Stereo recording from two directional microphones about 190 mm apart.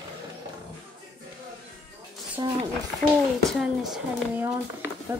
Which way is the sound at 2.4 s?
25° right (ahead or behind).